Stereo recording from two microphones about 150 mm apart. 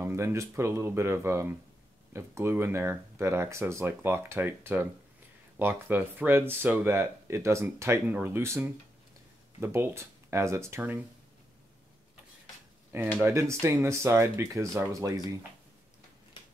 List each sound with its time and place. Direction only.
0.0 s speech: 20° right (ahead or behind)
12.9 s speech: 15° right (ahead or behind)